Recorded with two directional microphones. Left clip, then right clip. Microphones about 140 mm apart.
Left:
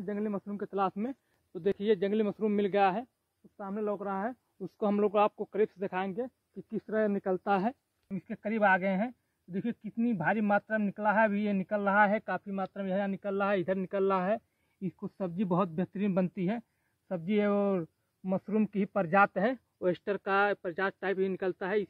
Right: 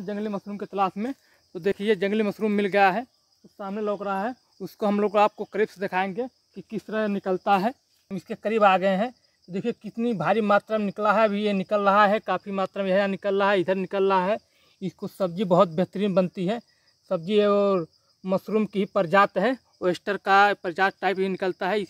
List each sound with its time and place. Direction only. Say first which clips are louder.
0.0 s speech: right 4 dB; 5° right (ahead or behind)
9.5 s speech: right 8 dB; 30° right (ahead or behind)
15.5 s a man's voice: right 13 dB; 50° right (ahead or behind)
16.3 s speech: right 7 dB; 20° right (ahead or behind)